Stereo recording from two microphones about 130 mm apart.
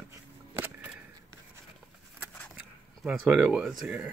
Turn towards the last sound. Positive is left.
turn(degrees=-5)  # may be behind; listen again after turning